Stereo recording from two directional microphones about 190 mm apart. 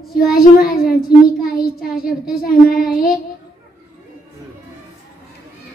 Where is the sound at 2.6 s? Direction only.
50° left (ahead or behind).